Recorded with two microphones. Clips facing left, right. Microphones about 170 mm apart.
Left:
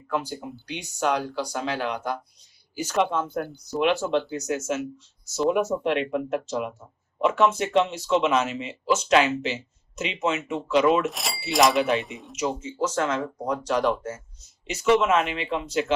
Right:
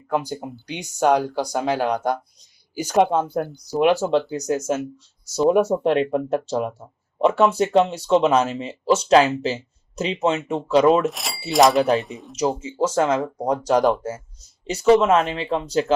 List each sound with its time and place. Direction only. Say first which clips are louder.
0.1 s speech: right 4 dB; 40° right (ahead or behind)
11.0 s speech: right 4 dB; centre (ahead or behind)
12.4 s speech: right 5 dB; 30° right (ahead or behind)